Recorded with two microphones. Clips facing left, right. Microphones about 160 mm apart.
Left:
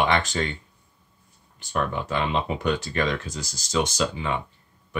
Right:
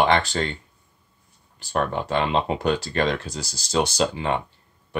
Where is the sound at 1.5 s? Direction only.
35° right (ahead or behind).